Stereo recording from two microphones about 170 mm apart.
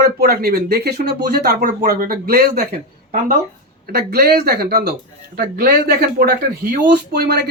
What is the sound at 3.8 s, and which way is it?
Speech, 65° right (ahead or behind).